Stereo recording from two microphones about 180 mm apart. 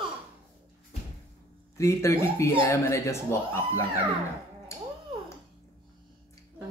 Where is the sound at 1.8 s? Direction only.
15° left (ahead or behind).